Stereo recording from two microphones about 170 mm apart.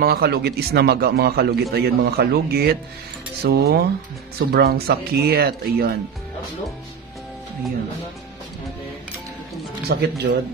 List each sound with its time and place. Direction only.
0.0 s a man's voice: 65° right (ahead or behind)
3.4 s cutlery: 65° right (ahead or behind)
4.5 s a man's voice: 70° right (ahead or behind)
9.8 s a man's voice: 70° right (ahead or behind)